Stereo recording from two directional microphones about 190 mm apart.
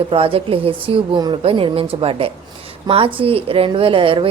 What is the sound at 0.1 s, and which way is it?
A woman's voice, 30° right (ahead or behind).